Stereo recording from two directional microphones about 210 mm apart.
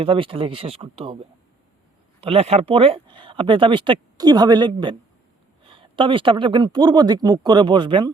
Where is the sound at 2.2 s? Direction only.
30° right (ahead or behind).